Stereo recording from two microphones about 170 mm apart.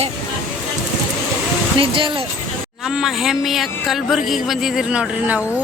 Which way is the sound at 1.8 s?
30° right (ahead or behind).